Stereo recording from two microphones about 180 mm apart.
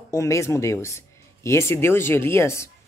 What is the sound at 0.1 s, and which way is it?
Speech, 15° left (ahead or behind).